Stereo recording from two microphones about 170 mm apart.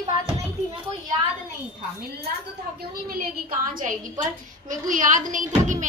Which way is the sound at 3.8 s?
50° right (ahead or behind).